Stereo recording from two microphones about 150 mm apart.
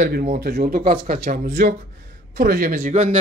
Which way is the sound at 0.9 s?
75° right (ahead or behind).